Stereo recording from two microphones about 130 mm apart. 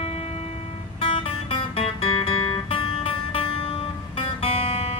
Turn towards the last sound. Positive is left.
turn(degrees=45)  # may be behind; listen again after turning